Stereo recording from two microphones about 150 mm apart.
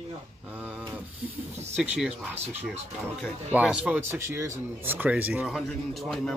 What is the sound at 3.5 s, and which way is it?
Speech, 10° right (ahead or behind).